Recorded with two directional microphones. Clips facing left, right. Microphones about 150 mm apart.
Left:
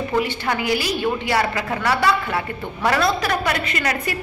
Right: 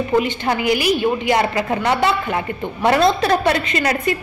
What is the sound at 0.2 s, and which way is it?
A woman's voice, 20° right (ahead or behind).